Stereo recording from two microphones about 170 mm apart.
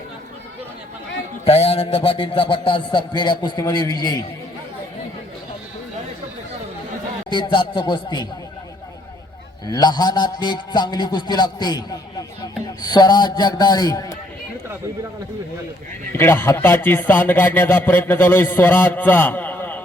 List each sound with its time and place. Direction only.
1.5 s a man's voice: 35° left (ahead or behind)
7.3 s a man's voice: 30° left (ahead or behind)
9.6 s a man's voice: 25° left (ahead or behind)
16.1 s speech: 15° left (ahead or behind)